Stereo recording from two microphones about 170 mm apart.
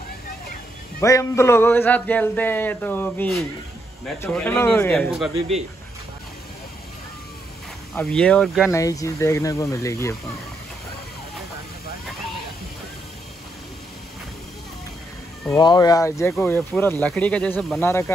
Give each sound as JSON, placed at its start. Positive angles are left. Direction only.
{"t": 1.0, "sound": "speech", "side_deg": 20}
{"t": 4.9, "sound": "speech", "side_deg": 0}
{"t": 5.3, "sound": "speech", "side_deg": -35}
{"t": 7.9, "sound": "speech", "side_deg": 5}
{"t": 8.7, "sound": "speech", "side_deg": 20}
{"t": 15.4, "sound": "speech", "side_deg": 20}